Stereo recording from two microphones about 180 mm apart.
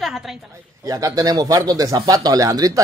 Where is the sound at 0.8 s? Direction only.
20° right (ahead or behind).